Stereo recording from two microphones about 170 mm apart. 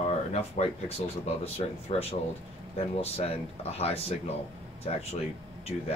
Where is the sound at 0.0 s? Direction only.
40° left (ahead or behind).